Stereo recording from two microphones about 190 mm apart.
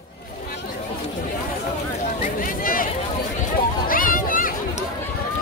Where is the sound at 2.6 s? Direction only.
50° left (ahead or behind).